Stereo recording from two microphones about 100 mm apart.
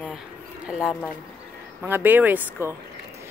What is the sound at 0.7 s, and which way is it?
Speech, 5° right (ahead or behind).